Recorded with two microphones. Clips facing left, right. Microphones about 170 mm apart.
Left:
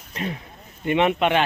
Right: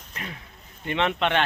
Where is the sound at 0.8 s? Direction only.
15° left (ahead or behind).